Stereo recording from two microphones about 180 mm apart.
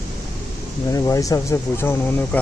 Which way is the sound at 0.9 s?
20° left (ahead or behind).